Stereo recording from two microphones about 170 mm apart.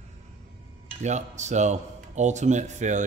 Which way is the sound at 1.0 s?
45° right (ahead or behind).